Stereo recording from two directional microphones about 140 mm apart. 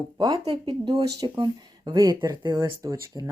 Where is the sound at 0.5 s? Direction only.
30° right (ahead or behind).